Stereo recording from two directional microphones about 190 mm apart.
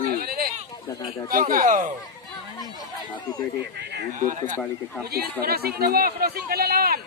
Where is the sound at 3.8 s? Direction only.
60° right (ahead or behind).